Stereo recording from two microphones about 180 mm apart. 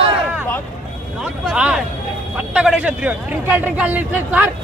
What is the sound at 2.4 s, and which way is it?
A man's voice, 5° right (ahead or behind).